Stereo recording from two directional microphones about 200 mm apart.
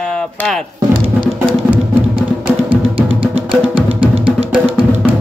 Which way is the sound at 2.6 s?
25° right (ahead or behind).